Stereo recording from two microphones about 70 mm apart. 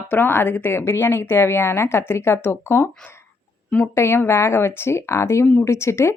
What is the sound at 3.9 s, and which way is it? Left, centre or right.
Speech, left.